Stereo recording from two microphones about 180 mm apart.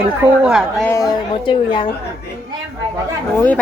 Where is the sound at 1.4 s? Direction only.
30° left (ahead or behind).